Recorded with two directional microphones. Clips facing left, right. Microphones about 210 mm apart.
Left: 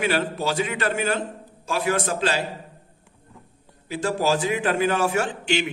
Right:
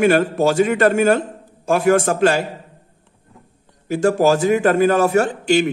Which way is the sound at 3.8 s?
45° right (ahead or behind).